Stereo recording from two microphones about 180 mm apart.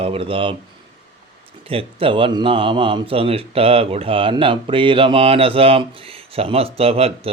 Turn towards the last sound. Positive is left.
turn(degrees=-35)  # may be behind; listen again after turning